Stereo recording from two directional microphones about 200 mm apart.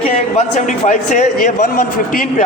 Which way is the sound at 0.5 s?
40° left (ahead or behind).